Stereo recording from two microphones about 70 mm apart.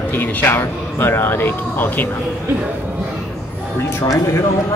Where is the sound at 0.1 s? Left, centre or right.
Left.